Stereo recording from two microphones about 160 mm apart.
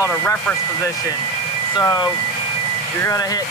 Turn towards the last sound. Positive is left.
turn(degrees=20)  # may be behind; listen again after turning